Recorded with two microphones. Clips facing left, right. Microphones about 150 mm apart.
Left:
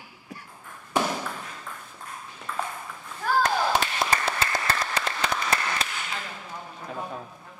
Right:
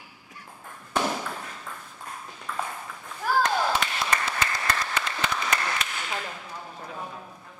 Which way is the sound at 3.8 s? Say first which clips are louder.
Left 2 dB; 30° left (ahead or behind).